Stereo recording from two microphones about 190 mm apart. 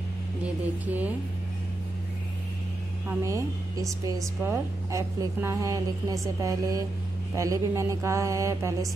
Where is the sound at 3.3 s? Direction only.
15° right (ahead or behind).